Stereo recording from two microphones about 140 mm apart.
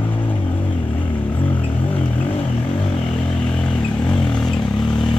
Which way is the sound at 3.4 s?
5° left (ahead or behind).